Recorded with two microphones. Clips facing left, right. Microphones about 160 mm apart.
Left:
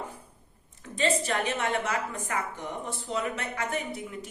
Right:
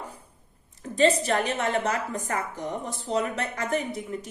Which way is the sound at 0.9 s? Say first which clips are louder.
Right 5 dB; 40° right (ahead or behind).